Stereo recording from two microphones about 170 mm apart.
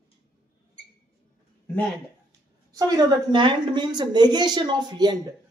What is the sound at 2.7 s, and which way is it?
A woman's voice, 20° right (ahead or behind).